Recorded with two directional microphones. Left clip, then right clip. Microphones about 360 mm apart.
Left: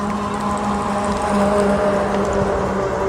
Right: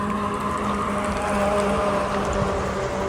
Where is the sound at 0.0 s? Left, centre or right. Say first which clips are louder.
Left 3 dB; left.